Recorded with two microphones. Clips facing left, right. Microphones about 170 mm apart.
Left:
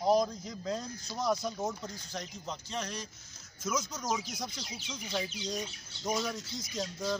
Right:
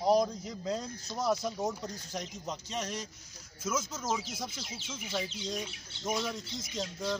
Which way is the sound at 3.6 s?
5° right (ahead or behind).